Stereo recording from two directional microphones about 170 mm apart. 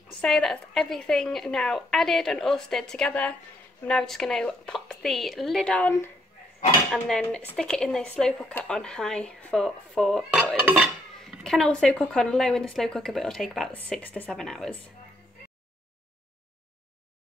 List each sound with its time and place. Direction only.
0.2 s speech: centre (ahead or behind)